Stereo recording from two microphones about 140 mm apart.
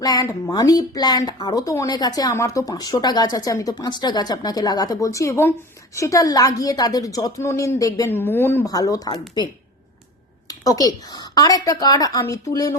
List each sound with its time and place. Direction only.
0.0 s speech: 25° left (ahead or behind)
8.6 s speech: 25° left (ahead or behind)
10.5 s speech: 25° left (ahead or behind)